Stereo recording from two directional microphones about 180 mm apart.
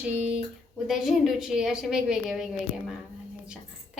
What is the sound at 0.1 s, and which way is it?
A woman's voice, 10° right (ahead or behind).